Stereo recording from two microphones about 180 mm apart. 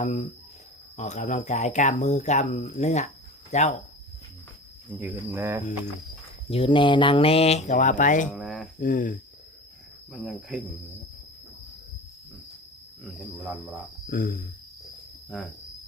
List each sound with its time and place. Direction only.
0.0 s speech: 40° left (ahead or behind)
4.9 s cricket: 10° right (ahead or behind)
6.5 s speech: 30° left (ahead or behind); by 8.3 s 45° left (ahead or behind)
8.3 s a sound: 5° left (ahead or behind)
8.8 s speech: 50° left (ahead or behind)
10.1 s speech: centre (ahead or behind)
13.1 s speech: centre (ahead or behind)
14.1 s speech: 55° left (ahead or behind)